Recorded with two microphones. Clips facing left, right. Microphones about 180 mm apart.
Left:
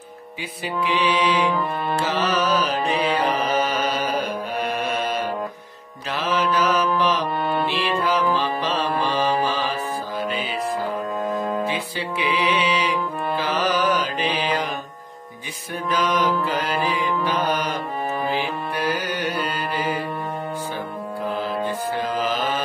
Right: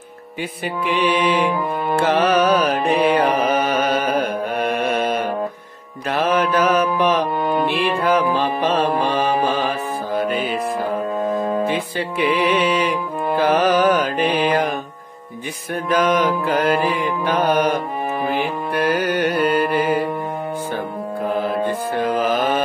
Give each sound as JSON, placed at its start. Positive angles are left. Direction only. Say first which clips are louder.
{"t": 0.8, "sound": "mantra", "louder": "right 3 dB", "side_deg": -55}
{"t": 2.9, "sound": "music", "louder": "right 7 dB", "side_deg": -55}
{"t": 6.0, "sound": "mantra", "louder": "right 5 dB", "side_deg": -55}
{"t": 7.0, "sound": "music", "louder": "right 4 dB", "side_deg": -55}
{"t": 11.3, "sound": "music", "louder": "right 4 dB", "side_deg": -25}
{"t": 11.6, "sound": "music", "louder": "right 5 dB", "side_deg": -55}
{"t": 15.9, "sound": "mantra", "louder": "right 4 dB", "side_deg": -55}
{"t": 18.3, "sound": "music", "louder": "right 4 dB", "side_deg": -55}
{"t": 21.3, "sound": "mantra", "louder": "right 5 dB", "side_deg": -55}